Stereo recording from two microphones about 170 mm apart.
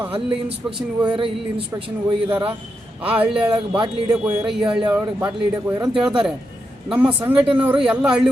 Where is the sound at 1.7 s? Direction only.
30° right (ahead or behind).